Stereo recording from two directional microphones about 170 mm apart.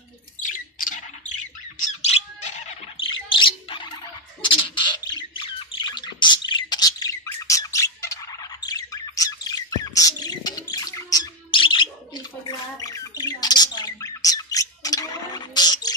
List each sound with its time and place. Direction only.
0.4 s bird: 50° left (ahead or behind)
2.0 s a sound: 40° left (ahead or behind)
3.1 s bird: 30° left (ahead or behind)